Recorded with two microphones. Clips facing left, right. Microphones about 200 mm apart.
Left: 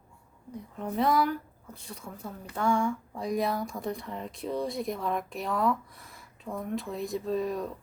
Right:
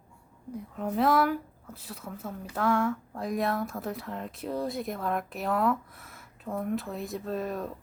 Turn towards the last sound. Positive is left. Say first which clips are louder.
# left 2 dB
turn(degrees=0)  # may be behind; listen again after turning